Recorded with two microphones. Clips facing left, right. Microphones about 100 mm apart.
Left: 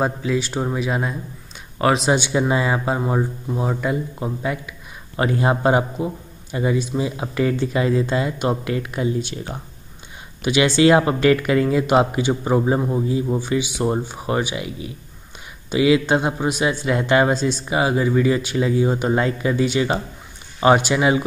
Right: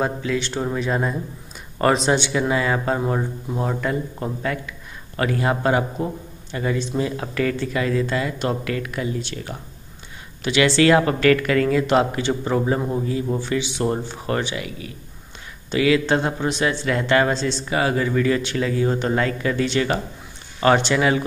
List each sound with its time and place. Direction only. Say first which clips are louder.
0.0 s speech: left 2 dB; 15° left (ahead or behind)
2.1 s speech: left 1 dB; 15° left (ahead or behind)